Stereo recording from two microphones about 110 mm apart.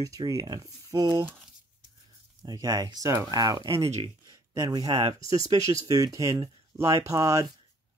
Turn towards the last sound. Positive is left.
turn(degrees=-30)  # may be behind; listen again after turning